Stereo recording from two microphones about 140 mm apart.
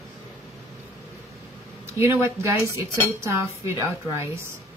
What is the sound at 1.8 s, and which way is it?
A woman's voice, 20° right (ahead or behind).